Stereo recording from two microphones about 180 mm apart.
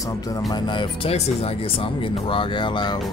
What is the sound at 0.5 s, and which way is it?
Speech, 25° left (ahead or behind).